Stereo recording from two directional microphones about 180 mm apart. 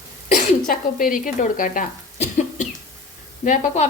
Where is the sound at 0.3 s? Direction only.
50° left (ahead or behind).